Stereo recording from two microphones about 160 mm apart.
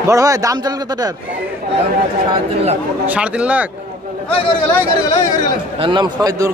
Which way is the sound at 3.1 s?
10° right (ahead or behind).